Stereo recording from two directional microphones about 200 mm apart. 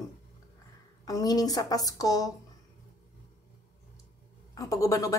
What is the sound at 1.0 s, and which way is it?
Speech, 20° left (ahead or behind).